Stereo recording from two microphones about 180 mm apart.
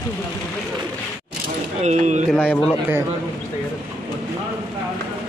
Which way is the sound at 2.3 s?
10° left (ahead or behind).